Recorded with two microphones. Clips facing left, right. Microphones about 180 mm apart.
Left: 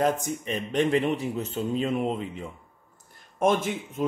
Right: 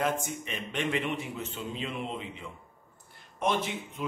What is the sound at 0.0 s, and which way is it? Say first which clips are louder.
A man's voice: left 5 dB; 40° left (ahead or behind).